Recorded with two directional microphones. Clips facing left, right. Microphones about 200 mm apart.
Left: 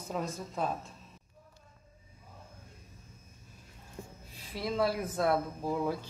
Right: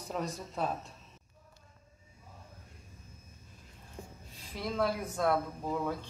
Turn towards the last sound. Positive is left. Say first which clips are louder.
# left 2 dB
turn(degrees=10)  # may be behind; listen again after turning